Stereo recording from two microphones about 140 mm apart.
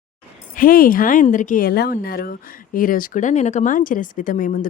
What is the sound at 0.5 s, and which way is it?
Speech, 90° left.